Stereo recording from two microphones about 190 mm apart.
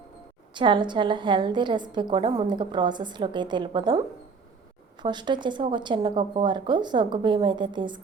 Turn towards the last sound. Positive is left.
turn(degrees=-25)  # may be behind; listen again after turning